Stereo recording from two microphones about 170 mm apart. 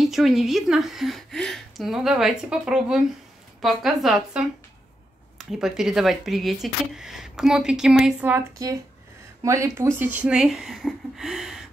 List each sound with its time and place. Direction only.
0.0 s speech: centre (ahead or behind)
8.6 s speech: 20° right (ahead or behind); by 11.6 s 5° right (ahead or behind)